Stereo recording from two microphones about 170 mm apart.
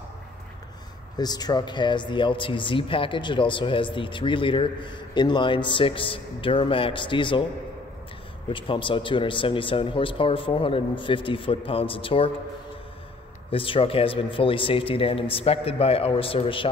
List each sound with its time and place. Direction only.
1.1 s speech: 25° left (ahead or behind)
8.5 s speech: 30° left (ahead or behind)
13.5 s speech: 35° left (ahead or behind)